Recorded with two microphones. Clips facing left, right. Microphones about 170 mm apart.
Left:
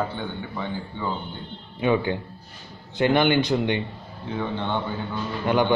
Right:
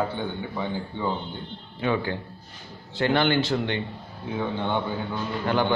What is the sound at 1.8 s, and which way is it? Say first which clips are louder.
A man's voice: left 4 dB; 20° left (ahead or behind).